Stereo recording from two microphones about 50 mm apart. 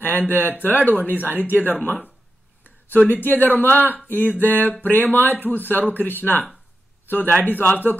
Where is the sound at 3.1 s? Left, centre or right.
Left.